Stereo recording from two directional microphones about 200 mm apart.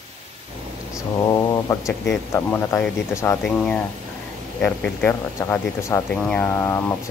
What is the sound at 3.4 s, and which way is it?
Speech, 5° left (ahead or behind).